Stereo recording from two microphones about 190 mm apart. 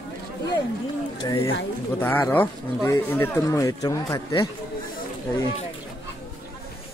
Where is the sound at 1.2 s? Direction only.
15° left (ahead or behind).